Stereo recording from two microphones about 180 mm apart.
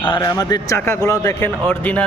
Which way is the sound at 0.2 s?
20° left (ahead or behind).